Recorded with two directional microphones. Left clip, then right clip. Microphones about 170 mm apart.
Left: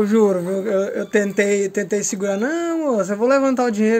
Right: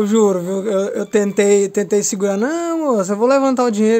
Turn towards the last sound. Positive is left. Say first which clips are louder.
# right 3 dB
turn(degrees=-30)  # may be behind; listen again after turning